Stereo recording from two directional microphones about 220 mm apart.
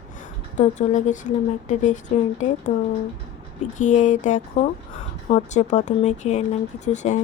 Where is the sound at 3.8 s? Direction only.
35° left (ahead or behind).